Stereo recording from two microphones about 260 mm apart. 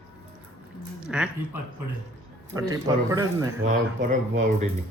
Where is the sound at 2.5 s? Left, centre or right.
Centre.